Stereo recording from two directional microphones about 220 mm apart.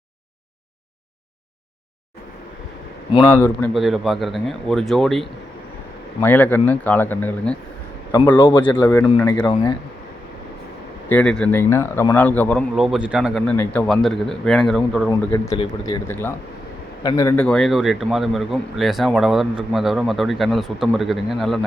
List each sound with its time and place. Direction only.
3.2 s a man's voice: 10° left (ahead or behind)
11.1 s a man's voice: 5° left (ahead or behind)
15.4 s a man's voice: 25° left (ahead or behind)
16.0 s a man's voice: 10° left (ahead or behind)